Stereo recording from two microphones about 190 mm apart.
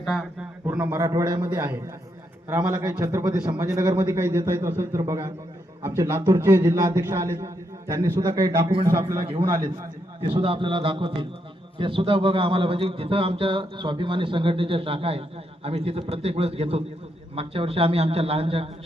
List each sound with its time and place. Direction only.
0.0 s a man's voice: centre (ahead or behind)
0.6 s a man's voice: 15° right (ahead or behind); by 18.7 s 30° right (ahead or behind)